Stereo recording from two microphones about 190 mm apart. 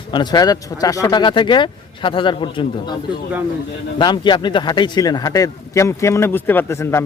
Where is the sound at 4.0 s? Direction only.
25° left (ahead or behind).